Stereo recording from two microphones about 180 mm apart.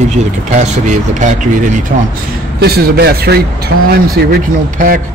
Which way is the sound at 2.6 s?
60° right (ahead or behind).